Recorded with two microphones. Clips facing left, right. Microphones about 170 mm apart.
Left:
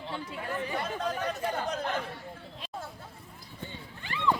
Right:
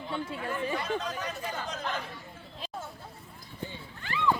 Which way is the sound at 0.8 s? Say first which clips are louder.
Left 1 dB; 55° left (ahead or behind).